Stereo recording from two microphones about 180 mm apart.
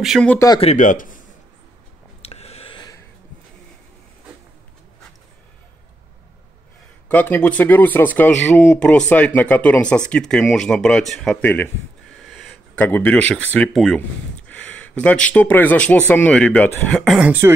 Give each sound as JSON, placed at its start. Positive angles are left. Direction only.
{"t": 0.0, "sound": "speech", "side_deg": 0}
{"t": 0.6, "sound": "speech", "side_deg": 40}
{"t": 2.2, "sound": "a sound", "side_deg": 35}
{"t": 7.1, "sound": "speech", "side_deg": 10}
{"t": 12.2, "sound": "a sound", "side_deg": 0}
{"t": 12.7, "sound": "speech", "side_deg": 10}